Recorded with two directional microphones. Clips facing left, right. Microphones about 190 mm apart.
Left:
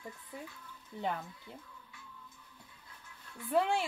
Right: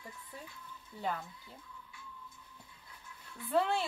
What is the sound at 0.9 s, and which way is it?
Speech, 20° left (ahead or behind).